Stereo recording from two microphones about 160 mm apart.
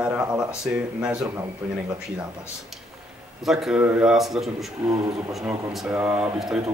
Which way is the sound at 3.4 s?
Centre (ahead or behind).